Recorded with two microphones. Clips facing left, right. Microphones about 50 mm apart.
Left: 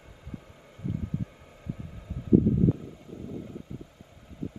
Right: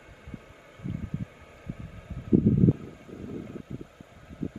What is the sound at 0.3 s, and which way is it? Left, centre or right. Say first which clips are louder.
Vehicle: left 2 dB; right.